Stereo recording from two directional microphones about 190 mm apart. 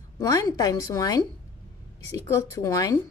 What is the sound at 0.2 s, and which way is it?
A woman's voice, 20° left (ahead or behind).